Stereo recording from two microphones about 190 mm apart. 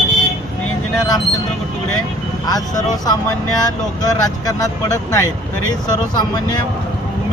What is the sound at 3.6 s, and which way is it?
Speech, 20° left (ahead or behind).